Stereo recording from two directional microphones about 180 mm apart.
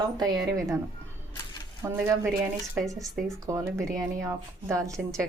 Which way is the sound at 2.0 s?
15° right (ahead or behind).